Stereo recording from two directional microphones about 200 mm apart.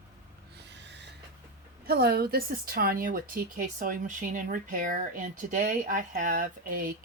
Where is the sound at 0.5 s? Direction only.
60° right (ahead or behind).